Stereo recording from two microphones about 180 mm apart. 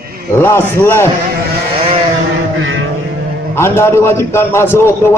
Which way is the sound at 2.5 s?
90° right.